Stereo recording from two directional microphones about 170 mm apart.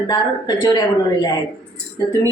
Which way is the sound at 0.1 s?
25° left (ahead or behind).